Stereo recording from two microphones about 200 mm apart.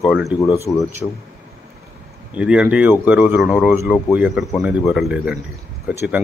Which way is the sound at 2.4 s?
5° right (ahead or behind).